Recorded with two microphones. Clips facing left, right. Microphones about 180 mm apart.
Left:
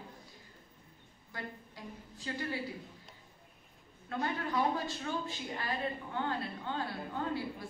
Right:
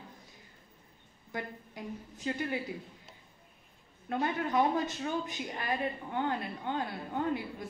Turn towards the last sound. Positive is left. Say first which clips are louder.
# right 3 dB
turn(degrees=-20)  # may be behind; listen again after turning